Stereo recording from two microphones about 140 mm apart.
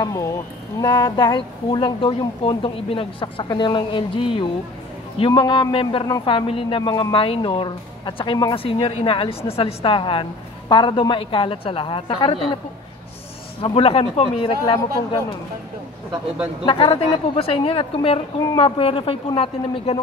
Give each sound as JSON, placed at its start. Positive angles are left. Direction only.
{"t": 0.0, "sound": "speech", "side_deg": 25}
{"t": 6.2, "sound": "speech", "side_deg": 40}
{"t": 13.7, "sound": "speech", "side_deg": 40}
{"t": 16.6, "sound": "speech", "side_deg": 40}